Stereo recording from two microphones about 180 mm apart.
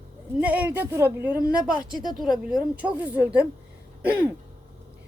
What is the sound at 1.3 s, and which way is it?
Speech, 55° right (ahead or behind).